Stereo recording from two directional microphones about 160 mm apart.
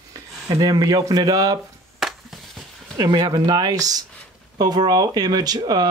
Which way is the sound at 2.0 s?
Centre (ahead or behind).